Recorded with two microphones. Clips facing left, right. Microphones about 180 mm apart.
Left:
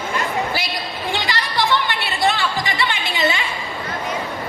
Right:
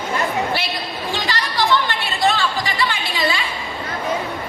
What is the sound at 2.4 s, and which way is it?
Music, 20° left (ahead or behind).